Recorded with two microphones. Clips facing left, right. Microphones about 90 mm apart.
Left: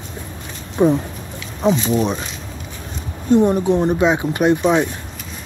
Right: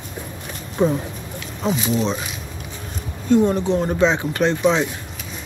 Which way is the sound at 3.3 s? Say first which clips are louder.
Left 2 dB; 15° left (ahead or behind).